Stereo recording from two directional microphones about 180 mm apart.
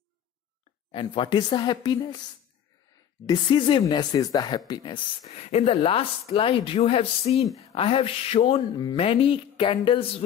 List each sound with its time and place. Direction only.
0.9 s speech: 25° left (ahead or behind)
3.3 s speech: 25° left (ahead or behind)
5.2 s speech: 35° left (ahead or behind)